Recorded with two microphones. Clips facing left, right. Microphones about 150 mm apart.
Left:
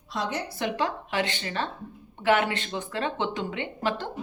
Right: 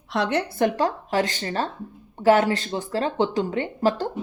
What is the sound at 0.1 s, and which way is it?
Speech, 70° right (ahead or behind).